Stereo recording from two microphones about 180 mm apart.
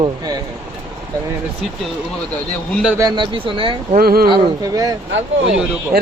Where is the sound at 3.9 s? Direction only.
55° right (ahead or behind).